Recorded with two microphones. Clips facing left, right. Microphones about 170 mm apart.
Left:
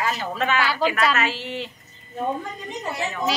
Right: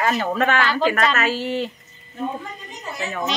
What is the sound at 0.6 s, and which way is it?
Speech, 10° left (ahead or behind).